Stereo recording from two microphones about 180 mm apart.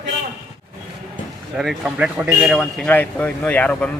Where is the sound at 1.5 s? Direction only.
5° right (ahead or behind).